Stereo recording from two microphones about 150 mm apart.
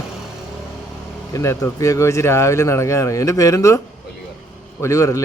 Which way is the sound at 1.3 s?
20° left (ahead or behind).